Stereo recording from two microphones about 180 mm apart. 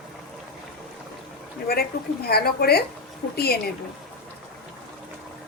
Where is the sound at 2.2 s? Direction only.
60° left (ahead or behind).